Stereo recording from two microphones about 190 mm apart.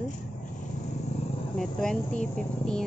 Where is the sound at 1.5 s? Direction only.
5° left (ahead or behind).